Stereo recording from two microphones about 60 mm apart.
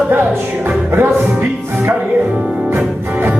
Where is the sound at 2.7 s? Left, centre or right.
Right.